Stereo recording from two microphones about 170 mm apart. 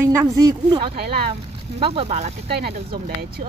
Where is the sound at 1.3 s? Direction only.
35° right (ahead or behind).